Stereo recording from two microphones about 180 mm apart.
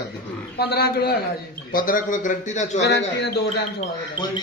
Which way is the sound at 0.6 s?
60° left (ahead or behind).